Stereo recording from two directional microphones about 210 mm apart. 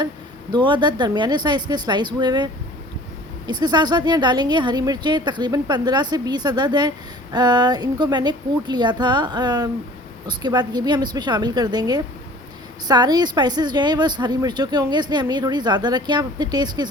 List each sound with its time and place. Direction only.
0.5 s speech: 20° right (ahead or behind)